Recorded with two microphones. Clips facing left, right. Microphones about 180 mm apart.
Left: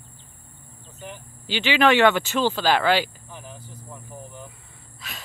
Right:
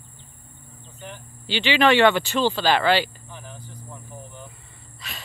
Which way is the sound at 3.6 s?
10° left (ahead or behind).